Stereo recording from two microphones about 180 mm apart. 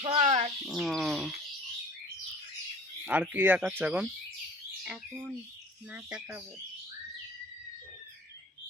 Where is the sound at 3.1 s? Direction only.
10° right (ahead or behind).